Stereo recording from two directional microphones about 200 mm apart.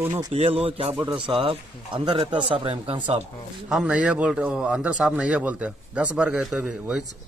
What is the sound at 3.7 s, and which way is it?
A man's voice, 5° right (ahead or behind).